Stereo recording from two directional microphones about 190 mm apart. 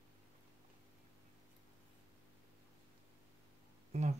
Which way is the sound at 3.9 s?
35° right (ahead or behind).